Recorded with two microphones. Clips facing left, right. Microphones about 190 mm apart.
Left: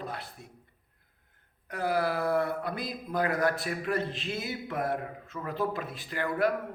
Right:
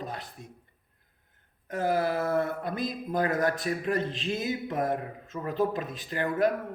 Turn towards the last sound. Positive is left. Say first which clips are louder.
# right 2 dB
turn(degrees=-20)  # may be behind; listen again after turning